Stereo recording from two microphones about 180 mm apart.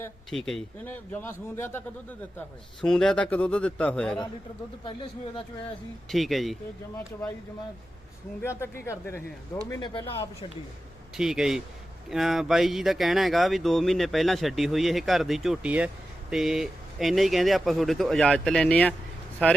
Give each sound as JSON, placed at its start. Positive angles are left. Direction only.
{"t": 0.3, "sound": "speech", "side_deg": 0}
{"t": 2.8, "sound": "speech", "side_deg": 5}
{"t": 6.1, "sound": "speech", "side_deg": 0}
{"t": 8.4, "sound": "speech", "side_deg": 15}
{"t": 11.2, "sound": "speech", "side_deg": -5}